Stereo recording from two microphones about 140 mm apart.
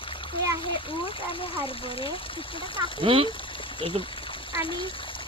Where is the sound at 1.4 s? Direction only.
40° left (ahead or behind).